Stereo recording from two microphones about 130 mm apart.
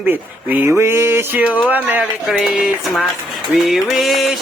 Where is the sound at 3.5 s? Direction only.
5° right (ahead or behind).